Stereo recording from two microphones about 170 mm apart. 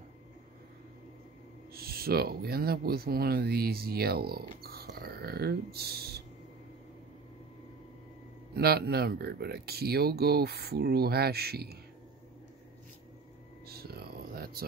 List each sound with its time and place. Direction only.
1.7 s speech: 65° right (ahead or behind)
8.5 s speech: 65° right (ahead or behind)
13.7 s a sound: 65° right (ahead or behind)